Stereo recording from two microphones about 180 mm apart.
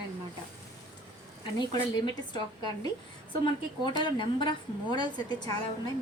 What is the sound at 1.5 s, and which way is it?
A woman's voice, 25° left (ahead or behind).